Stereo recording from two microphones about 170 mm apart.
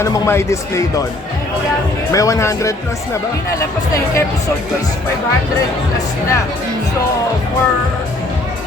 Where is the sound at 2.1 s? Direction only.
20° left (ahead or behind).